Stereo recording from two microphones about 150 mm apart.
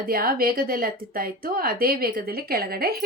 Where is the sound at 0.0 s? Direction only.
75° right (ahead or behind).